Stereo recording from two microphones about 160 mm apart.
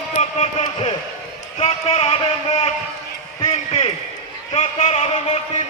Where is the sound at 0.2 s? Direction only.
45° left (ahead or behind).